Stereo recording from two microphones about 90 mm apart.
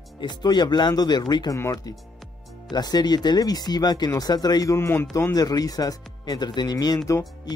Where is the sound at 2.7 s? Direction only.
50° left (ahead or behind).